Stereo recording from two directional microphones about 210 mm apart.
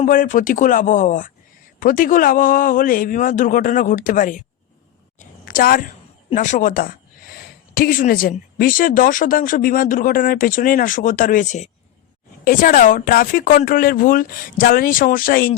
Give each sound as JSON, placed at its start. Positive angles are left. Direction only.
{"t": 0.0, "sound": "speech", "side_deg": 40}
{"t": 5.5, "sound": "a woman's voice", "side_deg": 40}